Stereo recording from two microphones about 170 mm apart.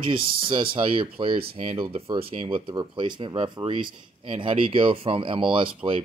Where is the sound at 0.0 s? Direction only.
30° right (ahead or behind).